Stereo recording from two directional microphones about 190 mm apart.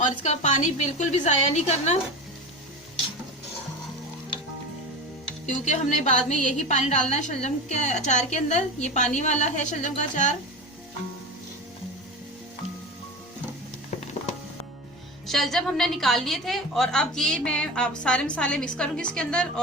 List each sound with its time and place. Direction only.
0.0 s a woman's voice: 40° left (ahead or behind)
5.5 s a woman's voice: 40° left (ahead or behind)
15.3 s a woman's voice: centre (ahead or behind)